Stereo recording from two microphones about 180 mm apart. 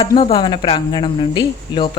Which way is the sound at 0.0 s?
30° left (ahead or behind).